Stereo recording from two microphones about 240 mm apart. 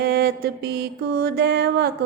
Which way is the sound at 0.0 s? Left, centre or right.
Right.